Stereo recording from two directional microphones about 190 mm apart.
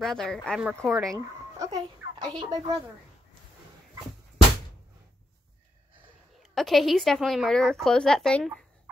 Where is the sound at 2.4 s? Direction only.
20° right (ahead or behind).